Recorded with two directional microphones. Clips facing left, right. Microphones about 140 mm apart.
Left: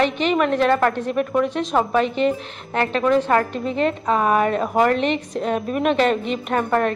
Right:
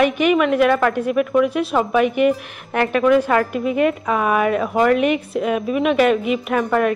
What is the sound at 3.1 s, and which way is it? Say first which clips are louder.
Speech: right 2 dB; 10° right (ahead or behind).